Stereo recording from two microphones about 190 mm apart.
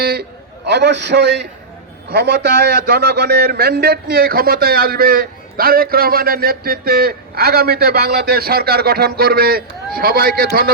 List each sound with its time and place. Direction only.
0.0 s a man's voice: 55° right (ahead or behind)